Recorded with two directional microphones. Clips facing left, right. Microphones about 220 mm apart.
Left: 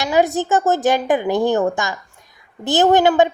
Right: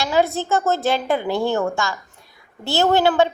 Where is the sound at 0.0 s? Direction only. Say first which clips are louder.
Left 3 dB; 15° left (ahead or behind).